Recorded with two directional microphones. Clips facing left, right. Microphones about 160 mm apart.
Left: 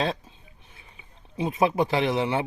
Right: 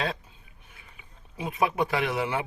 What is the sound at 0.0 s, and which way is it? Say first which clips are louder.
A man's voice: left 4 dB; 25° left (ahead or behind).